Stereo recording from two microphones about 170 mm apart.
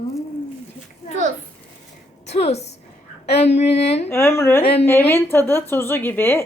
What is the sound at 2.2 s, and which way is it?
A woman's voice, 40° left (ahead or behind).